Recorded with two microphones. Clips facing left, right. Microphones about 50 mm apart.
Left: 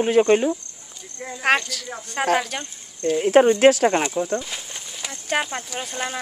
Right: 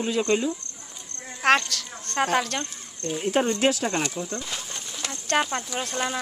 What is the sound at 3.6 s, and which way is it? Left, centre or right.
Speech, left.